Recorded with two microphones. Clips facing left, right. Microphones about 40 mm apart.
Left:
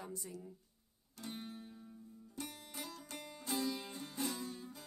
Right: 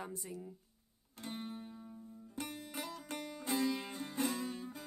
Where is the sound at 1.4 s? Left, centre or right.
Centre.